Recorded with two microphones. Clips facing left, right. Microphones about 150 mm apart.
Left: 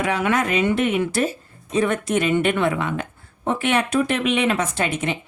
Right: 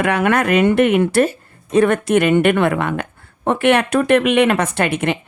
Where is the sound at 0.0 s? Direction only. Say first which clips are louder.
Right 5 dB; 60° right (ahead or behind).